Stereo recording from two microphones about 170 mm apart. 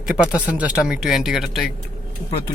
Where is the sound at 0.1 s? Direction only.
5° right (ahead or behind).